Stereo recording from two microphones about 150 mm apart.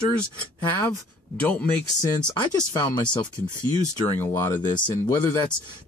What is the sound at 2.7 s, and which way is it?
Speech, 25° left (ahead or behind).